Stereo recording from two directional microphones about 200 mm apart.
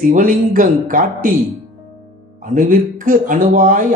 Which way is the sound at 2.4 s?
40° right (ahead or behind).